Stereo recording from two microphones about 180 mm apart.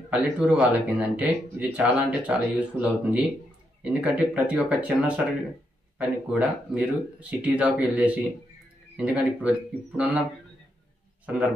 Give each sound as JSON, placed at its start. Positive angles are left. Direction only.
{"t": 0.1, "sound": "speech", "side_deg": -5}